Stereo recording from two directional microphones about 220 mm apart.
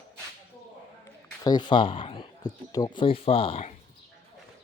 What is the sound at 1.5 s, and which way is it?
Speech, 20° left (ahead or behind).